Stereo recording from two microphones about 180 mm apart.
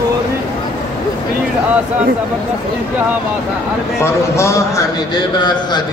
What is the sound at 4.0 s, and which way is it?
A man's voice, 15° left (ahead or behind).